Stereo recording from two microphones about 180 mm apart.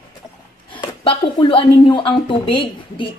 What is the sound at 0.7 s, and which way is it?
Speech, 30° left (ahead or behind).